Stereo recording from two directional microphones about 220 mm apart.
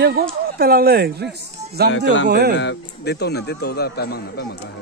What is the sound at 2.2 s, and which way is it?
Speech, 45° right (ahead or behind).